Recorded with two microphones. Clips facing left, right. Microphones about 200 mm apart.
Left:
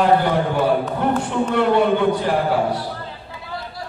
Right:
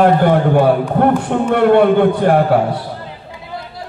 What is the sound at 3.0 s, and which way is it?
Basketball bounce, 20° right (ahead or behind).